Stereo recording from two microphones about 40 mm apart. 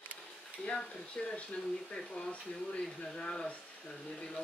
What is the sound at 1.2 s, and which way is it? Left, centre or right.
Speech, left.